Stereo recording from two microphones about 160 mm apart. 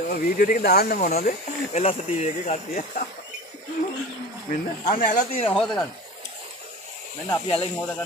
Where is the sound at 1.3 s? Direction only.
45° left (ahead or behind).